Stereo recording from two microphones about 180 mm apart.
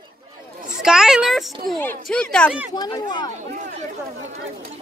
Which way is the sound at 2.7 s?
25° left (ahead or behind).